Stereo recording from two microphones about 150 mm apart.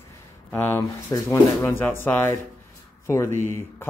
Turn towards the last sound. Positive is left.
turn(degrees=15)  # may be behind; listen again after turning